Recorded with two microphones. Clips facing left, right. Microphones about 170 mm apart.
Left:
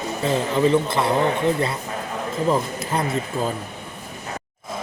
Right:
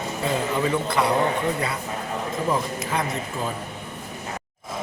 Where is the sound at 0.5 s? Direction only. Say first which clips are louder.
Left 7 dB; 25° left (ahead or behind).